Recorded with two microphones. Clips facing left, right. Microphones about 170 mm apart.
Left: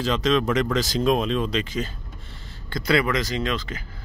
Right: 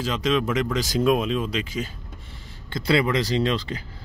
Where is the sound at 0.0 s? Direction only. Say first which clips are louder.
Left 2 dB; 10° right (ahead or behind).